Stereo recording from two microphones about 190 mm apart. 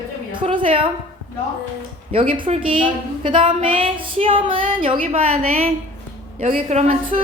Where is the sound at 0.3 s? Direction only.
25° right (ahead or behind).